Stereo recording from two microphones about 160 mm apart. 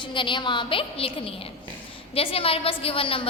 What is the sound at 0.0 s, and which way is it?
A woman's voice, 30° left (ahead or behind).